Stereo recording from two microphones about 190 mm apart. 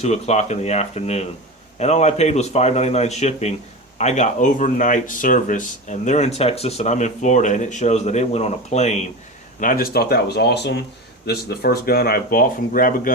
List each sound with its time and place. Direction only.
0.0 s speech: 35° left (ahead or behind)
9.6 s speech: 45° left (ahead or behind)